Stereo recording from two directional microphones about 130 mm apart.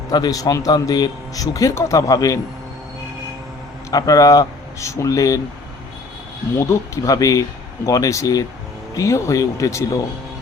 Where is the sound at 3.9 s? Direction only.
25° left (ahead or behind).